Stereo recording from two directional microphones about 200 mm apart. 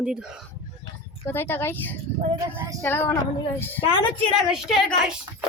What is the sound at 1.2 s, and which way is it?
Speech, 10° left (ahead or behind).